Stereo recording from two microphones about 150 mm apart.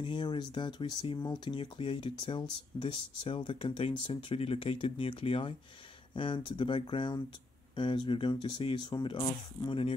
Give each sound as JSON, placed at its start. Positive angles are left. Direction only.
{"t": 0.0, "sound": "speech", "side_deg": 30}